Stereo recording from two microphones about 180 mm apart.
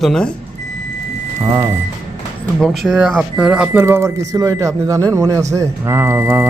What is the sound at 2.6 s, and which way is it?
Speech, centre (ahead or behind).